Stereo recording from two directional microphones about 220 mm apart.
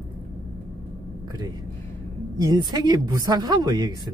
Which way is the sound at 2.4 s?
15° right (ahead or behind).